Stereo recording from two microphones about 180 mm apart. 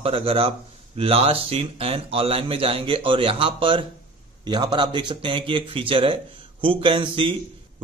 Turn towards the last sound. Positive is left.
turn(degrees=-30)  # may be behind; listen again after turning